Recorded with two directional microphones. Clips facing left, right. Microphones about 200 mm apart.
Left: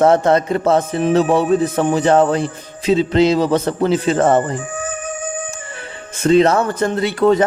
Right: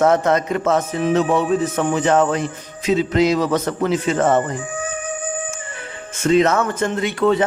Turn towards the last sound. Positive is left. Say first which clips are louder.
# left 3 dB
turn(degrees=40)  # may be behind; listen again after turning